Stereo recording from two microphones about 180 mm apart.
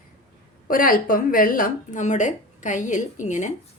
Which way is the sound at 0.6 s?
50° left (ahead or behind).